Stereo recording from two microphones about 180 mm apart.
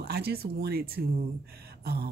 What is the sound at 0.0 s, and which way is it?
Speech, 60° right (ahead or behind).